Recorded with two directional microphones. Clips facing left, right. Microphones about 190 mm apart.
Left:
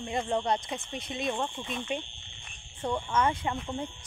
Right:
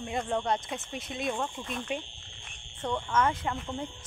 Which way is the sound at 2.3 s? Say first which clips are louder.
Left 1 dB; centre (ahead or behind).